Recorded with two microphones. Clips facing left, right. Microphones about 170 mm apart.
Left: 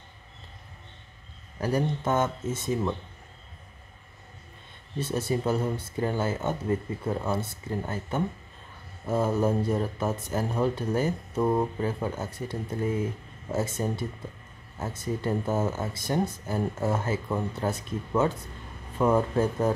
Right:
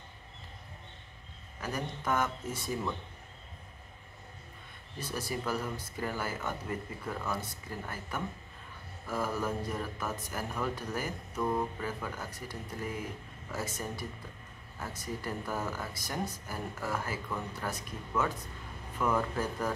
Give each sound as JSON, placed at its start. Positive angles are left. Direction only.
{"t": 1.6, "sound": "speech", "side_deg": 30}
{"t": 4.9, "sound": "speech", "side_deg": 25}